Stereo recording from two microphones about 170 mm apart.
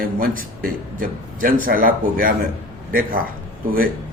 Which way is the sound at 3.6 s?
55° right (ahead or behind).